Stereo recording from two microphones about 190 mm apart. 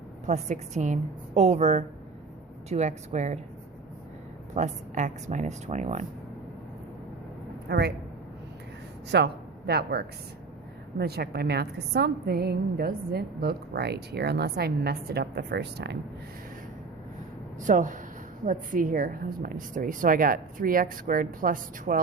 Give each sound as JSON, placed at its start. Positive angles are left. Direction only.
{"t": 0.3, "sound": "a woman's voice", "side_deg": -40}
{"t": 4.5, "sound": "a woman's voice", "side_deg": -40}
{"t": 7.7, "sound": "a woman's voice", "side_deg": -60}
{"t": 9.0, "sound": "a woman's voice", "side_deg": -60}
{"t": 17.6, "sound": "a woman's voice", "side_deg": -40}